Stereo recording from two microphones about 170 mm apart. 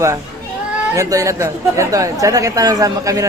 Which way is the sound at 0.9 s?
20° right (ahead or behind).